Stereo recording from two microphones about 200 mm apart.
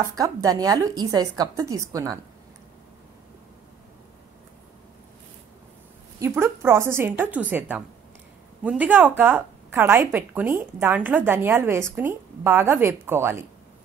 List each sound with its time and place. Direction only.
0.0 s a woman's voice: 15° right (ahead or behind)
6.1 s a woman's voice: 10° right (ahead or behind)